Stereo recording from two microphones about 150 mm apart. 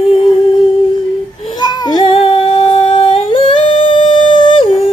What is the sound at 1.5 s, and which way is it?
Singing, 25° left (ahead or behind).